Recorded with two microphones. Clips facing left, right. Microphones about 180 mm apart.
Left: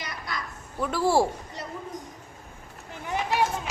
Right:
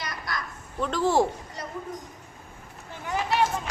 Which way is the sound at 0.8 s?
10° left (ahead or behind).